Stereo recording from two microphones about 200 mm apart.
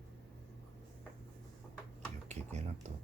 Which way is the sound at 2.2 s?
35° right (ahead or behind).